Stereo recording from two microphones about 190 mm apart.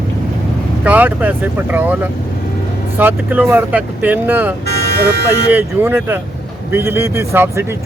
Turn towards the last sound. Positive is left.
turn(degrees=-15)  # may be behind; listen again after turning